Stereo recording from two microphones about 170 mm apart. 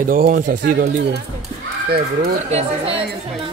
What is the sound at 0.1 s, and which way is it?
Speech, 55° right (ahead or behind).